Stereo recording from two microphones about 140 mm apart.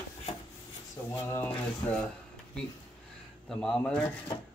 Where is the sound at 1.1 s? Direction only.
20° left (ahead or behind).